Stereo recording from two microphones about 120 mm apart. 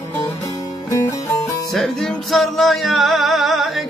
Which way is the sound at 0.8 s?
25° left (ahead or behind).